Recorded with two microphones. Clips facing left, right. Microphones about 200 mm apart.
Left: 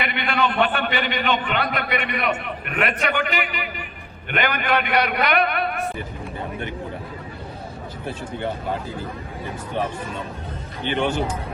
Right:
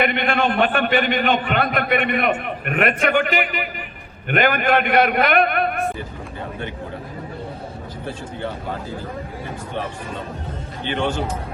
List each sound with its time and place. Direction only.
0.0 s a man's voice: 50° right (ahead or behind)